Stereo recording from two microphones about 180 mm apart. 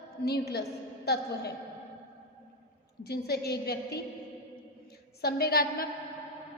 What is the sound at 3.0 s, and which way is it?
A woman's voice, 65° left (ahead or behind).